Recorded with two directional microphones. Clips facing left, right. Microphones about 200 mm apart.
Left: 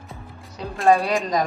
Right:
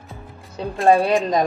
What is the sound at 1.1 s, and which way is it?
Speech, 15° right (ahead or behind).